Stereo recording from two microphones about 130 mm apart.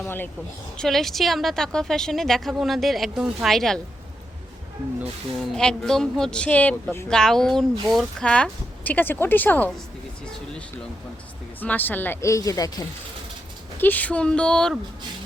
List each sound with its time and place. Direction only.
0.0 s a woman's voice: 15° left (ahead or behind)
0.8 s a woman's voice: centre (ahead or behind)
5.4 s speech: 5° left (ahead or behind)
11.6 s a woman's voice: 15° left (ahead or behind)
13.7 s speech: 15° left (ahead or behind)